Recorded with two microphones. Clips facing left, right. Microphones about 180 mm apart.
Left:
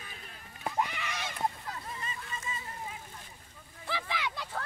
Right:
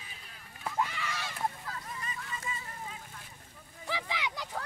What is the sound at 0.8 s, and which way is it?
Goose, 20° left (ahead or behind).